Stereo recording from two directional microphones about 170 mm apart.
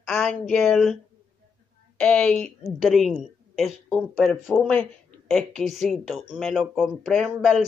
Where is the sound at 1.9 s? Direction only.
5° left (ahead or behind).